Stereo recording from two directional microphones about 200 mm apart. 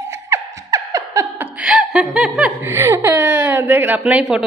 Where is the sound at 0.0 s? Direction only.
15° right (ahead or behind).